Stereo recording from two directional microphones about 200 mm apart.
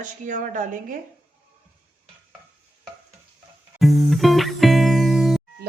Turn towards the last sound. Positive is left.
turn(degrees=0)  # may be behind; listen again after turning